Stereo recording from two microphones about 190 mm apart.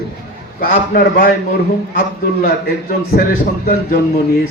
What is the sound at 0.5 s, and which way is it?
Speech, 45° left (ahead or behind).